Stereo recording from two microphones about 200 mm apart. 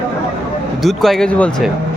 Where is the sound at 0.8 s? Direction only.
Centre (ahead or behind).